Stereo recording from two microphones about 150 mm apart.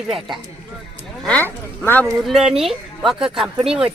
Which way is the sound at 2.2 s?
5° right (ahead or behind).